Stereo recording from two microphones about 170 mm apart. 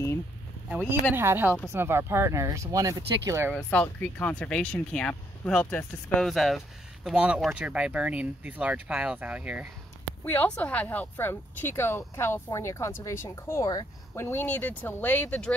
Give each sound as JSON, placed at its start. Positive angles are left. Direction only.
{"t": 1.1, "sound": "speech", "side_deg": -15}
{"t": 3.5, "sound": "speech", "side_deg": 10}
{"t": 6.2, "sound": "speech", "side_deg": 0}
{"t": 10.2, "sound": "speech", "side_deg": 10}